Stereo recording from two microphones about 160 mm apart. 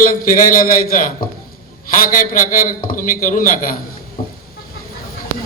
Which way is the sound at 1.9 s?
60° left (ahead or behind).